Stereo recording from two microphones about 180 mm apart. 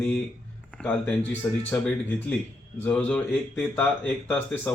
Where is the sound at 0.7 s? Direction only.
5° left (ahead or behind).